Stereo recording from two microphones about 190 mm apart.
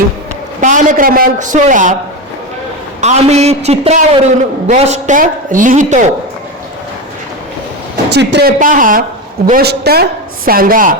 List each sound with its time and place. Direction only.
0.6 s a man's voice: 40° right (ahead or behind)
3.0 s a woman's voice: 35° right (ahead or behind)
8.1 s speech: 60° right (ahead or behind); by 10.9 s 45° right (ahead or behind)